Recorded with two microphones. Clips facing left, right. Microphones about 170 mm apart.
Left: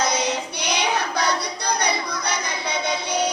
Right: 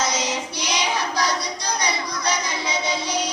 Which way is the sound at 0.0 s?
60° left (ahead or behind).